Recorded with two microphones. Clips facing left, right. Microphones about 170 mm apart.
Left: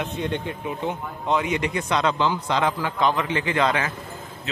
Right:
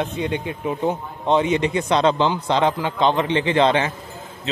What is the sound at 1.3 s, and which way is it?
A man's voice, 25° right (ahead or behind).